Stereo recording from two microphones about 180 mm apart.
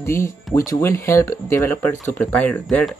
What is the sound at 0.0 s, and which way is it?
Speech, 15° left (ahead or behind).